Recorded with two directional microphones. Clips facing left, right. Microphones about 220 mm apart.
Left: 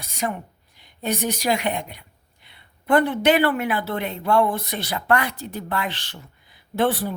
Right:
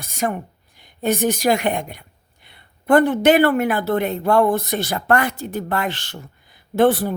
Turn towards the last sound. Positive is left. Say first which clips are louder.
# right 6 dB
turn(degrees=-45)  # may be behind; listen again after turning